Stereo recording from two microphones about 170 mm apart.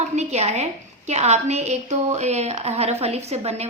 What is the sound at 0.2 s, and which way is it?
A woman's voice, 40° right (ahead or behind).